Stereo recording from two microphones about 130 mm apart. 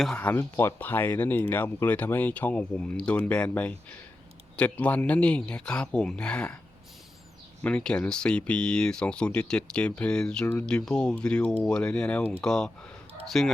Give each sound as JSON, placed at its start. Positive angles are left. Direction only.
{"t": 0.0, "sound": "speech", "side_deg": 10}
{"t": 7.6, "sound": "speech", "side_deg": 10}